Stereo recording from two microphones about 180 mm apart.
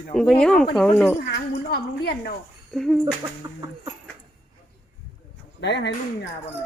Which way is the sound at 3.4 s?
20° right (ahead or behind).